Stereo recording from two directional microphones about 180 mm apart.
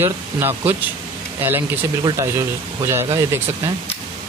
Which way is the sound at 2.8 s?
15° right (ahead or behind).